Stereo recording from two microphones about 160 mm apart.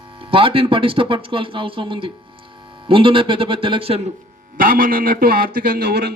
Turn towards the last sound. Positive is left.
turn(degrees=-85)